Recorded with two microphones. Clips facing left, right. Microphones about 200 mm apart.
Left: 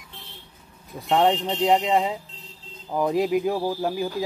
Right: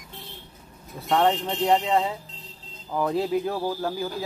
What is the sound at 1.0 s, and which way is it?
Speech, 15° left (ahead or behind).